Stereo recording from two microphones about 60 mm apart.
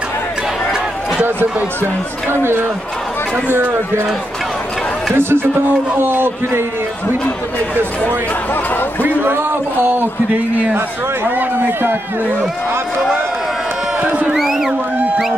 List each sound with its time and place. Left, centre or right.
5.1 s a man's voice: right
9.0 s a man's voice: right
14.0 s crowd: right
14.3 s a sound: centre